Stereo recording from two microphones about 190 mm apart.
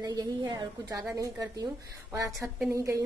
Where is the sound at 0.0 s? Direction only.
20° right (ahead or behind).